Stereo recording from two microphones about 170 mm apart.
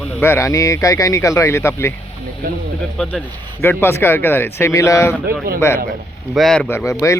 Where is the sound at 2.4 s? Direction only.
60° right (ahead or behind).